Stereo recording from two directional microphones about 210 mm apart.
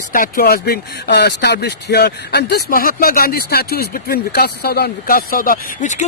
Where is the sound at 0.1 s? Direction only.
40° left (ahead or behind).